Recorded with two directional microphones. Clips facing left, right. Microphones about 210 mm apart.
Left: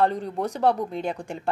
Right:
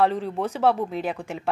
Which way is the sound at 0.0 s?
Centre (ahead or behind).